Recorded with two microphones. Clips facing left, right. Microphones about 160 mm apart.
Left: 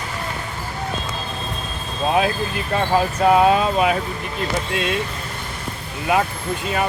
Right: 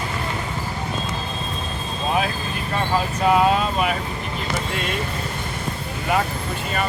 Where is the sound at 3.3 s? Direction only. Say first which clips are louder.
Left 3 dB; 25° left (ahead or behind).